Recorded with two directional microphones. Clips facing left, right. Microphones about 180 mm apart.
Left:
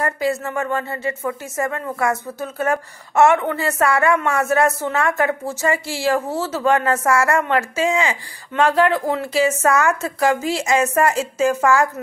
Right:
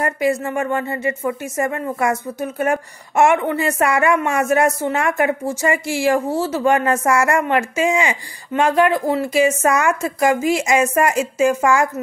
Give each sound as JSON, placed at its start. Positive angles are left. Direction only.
{"t": 0.0, "sound": "speech", "side_deg": -15}